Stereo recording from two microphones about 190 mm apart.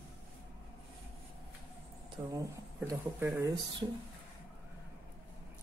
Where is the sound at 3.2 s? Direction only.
10° right (ahead or behind).